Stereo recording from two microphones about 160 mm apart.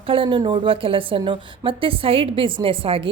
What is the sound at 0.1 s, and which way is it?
A woman's voice, 30° right (ahead or behind).